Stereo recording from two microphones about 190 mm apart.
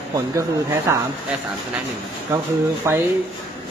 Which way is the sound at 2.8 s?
15° right (ahead or behind).